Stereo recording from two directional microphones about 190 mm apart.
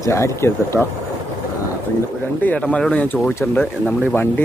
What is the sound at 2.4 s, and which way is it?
Speech, 10° left (ahead or behind).